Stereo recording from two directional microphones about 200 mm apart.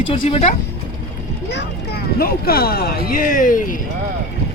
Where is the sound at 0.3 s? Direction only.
30° left (ahead or behind).